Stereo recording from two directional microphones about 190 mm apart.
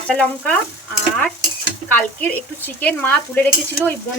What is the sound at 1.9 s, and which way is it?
Stir, 10° left (ahead or behind).